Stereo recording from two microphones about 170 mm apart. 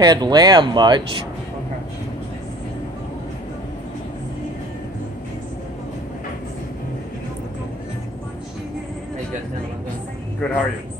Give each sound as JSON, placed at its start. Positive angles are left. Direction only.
{"t": 0.0, "sound": "speech", "side_deg": -25}
{"t": 10.4, "sound": "speech", "side_deg": 10}